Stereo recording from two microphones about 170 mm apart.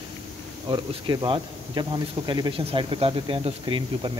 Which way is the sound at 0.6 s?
25° right (ahead or behind).